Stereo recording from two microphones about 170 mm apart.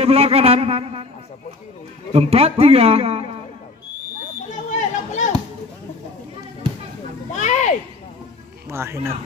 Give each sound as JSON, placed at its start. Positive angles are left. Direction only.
{"t": 0.0, "sound": "a man's voice", "side_deg": -35}
{"t": 2.1, "sound": "a man's voice", "side_deg": -35}
{"t": 4.5, "sound": "chatter", "side_deg": 45}
{"t": 7.3, "sound": "a sound", "side_deg": 45}
{"t": 8.6, "sound": "speech", "side_deg": -15}